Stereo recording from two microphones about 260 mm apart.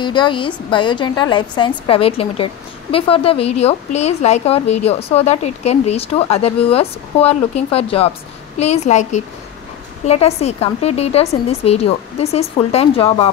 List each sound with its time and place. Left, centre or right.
0.0 s a woman's voice: centre